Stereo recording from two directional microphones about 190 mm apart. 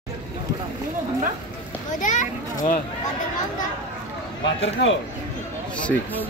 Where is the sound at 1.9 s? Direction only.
40° left (ahead or behind).